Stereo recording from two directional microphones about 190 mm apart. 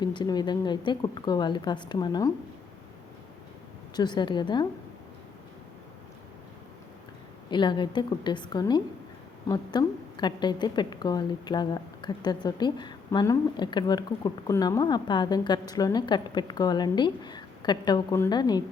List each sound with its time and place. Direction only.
0.0 s a woman's voice: 25° left (ahead or behind)
3.9 s a woman's voice: 20° left (ahead or behind)
7.5 s a woman's voice: 25° left (ahead or behind)